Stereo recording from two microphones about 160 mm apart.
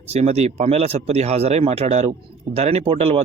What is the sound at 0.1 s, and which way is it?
Speech, 45° right (ahead or behind).